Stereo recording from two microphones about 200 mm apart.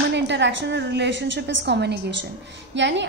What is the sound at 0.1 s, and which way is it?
A woman's voice, 60° right (ahead or behind).